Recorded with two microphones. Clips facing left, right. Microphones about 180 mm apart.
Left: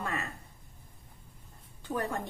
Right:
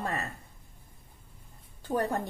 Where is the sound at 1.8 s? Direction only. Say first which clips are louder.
Right 4 dB; 35° right (ahead or behind).